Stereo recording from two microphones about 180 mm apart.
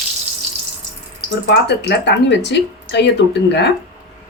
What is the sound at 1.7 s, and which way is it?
Speech, 70° left (ahead or behind).